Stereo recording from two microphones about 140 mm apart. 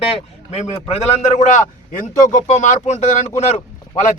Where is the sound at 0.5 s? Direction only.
50° left (ahead or behind).